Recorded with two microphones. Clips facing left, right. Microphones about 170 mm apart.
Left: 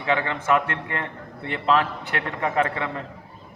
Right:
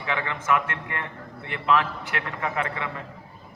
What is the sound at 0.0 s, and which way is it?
A man's voice, 30° left (ahead or behind).